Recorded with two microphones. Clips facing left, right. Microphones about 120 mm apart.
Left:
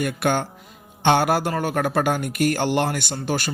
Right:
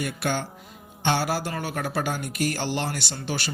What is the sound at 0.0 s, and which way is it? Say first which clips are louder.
Speech: left 5 dB; 50° left (ahead or behind).